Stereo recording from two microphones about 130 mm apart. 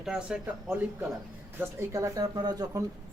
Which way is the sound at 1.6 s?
20° right (ahead or behind).